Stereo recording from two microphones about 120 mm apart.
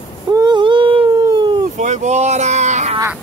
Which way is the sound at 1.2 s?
35° right (ahead or behind).